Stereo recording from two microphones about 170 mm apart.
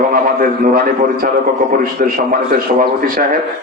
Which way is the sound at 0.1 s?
60° right (ahead or behind).